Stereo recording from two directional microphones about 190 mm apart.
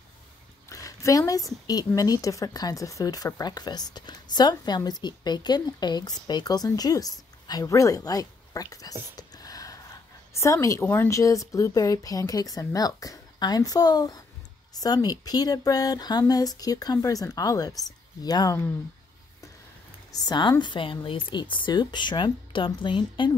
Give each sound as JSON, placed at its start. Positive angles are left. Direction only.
{"t": 0.7, "sound": "a sound", "side_deg": 15}
{"t": 1.7, "sound": "a woman's voice", "side_deg": 20}
{"t": 20.2, "sound": "speech", "side_deg": 20}